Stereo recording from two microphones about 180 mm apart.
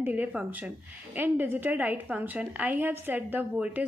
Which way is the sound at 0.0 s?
10° right (ahead or behind).